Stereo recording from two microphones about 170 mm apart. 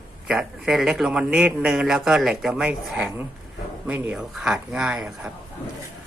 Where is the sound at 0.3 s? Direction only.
5° right (ahead or behind).